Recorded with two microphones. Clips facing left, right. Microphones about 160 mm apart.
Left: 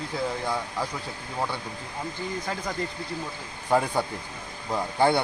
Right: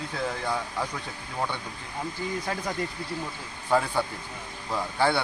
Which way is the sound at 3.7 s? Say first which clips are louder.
Left 1 dB; 15° left (ahead or behind).